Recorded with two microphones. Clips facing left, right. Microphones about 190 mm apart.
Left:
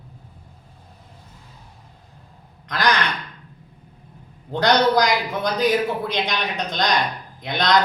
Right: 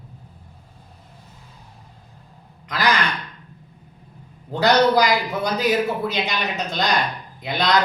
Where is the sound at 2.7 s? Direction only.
5° right (ahead or behind).